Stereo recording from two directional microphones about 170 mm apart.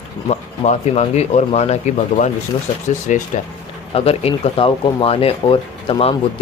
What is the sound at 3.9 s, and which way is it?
Speech, 35° left (ahead or behind).